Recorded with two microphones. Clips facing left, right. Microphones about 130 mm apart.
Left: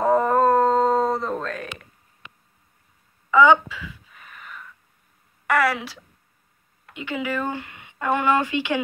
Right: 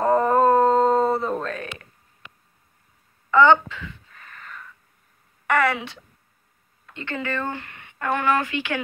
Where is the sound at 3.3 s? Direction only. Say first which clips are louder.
Even; 5° left (ahead or behind).